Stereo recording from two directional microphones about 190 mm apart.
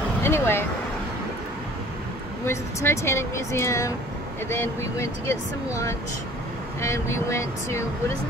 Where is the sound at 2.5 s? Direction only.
15° left (ahead or behind).